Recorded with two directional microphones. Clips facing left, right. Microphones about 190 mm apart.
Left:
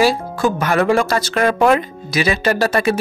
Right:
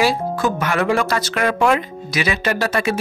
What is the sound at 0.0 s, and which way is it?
Speech, 35° left (ahead or behind).